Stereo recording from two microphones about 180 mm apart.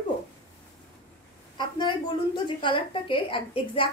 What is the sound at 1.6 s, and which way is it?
A woman's voice, 25° left (ahead or behind).